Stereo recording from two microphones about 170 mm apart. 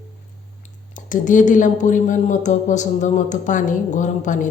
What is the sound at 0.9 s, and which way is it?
A woman's voice, 50° left (ahead or behind).